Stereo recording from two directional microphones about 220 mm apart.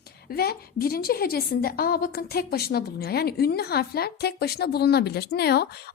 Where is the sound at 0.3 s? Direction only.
45° left (ahead or behind).